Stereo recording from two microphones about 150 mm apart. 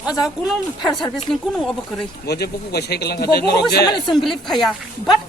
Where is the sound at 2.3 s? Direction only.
90° left.